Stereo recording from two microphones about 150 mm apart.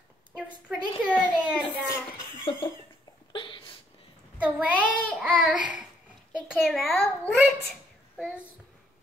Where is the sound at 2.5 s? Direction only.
40° left (ahead or behind).